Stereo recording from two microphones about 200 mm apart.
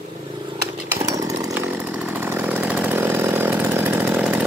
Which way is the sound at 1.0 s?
15° right (ahead or behind).